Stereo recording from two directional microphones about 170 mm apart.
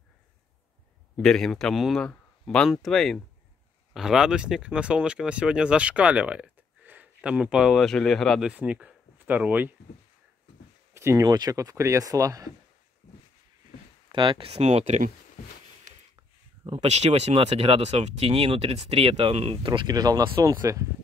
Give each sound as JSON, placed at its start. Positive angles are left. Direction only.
{"t": 1.1, "sound": "speech", "side_deg": 5}
{"t": 11.0, "sound": "speech", "side_deg": -15}
{"t": 14.1, "sound": "speech", "side_deg": -30}
{"t": 16.6, "sound": "speech", "side_deg": -35}